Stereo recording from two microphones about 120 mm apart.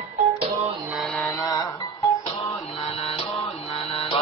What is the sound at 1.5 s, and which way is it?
Music, 25° left (ahead or behind).